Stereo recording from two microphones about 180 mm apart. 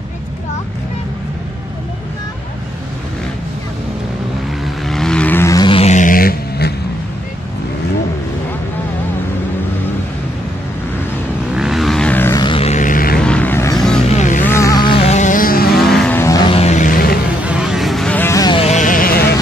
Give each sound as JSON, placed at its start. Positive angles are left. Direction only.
{"t": 4.8, "sound": "vehicle", "side_deg": 0}
{"t": 11.5, "sound": "vehicle", "side_deg": 0}
{"t": 12.4, "sound": "vehicle", "side_deg": 30}
{"t": 13.2, "sound": "vehicle", "side_deg": 5}
{"t": 14.1, "sound": "music", "side_deg": 45}
{"t": 14.4, "sound": "music", "side_deg": 15}
{"t": 15.7, "sound": "vehicle", "side_deg": 0}
{"t": 16.2, "sound": "vehicle", "side_deg": 15}
{"t": 16.4, "sound": "vehicle", "side_deg": 35}
{"t": 17.5, "sound": "vehicle", "side_deg": -5}
{"t": 18.6, "sound": "sheep", "side_deg": 40}